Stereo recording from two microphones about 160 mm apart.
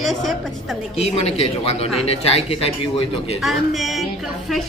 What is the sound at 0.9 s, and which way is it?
Speech, 40° left (ahead or behind).